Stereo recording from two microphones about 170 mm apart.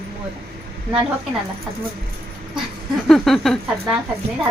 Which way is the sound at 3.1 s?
Centre (ahead or behind).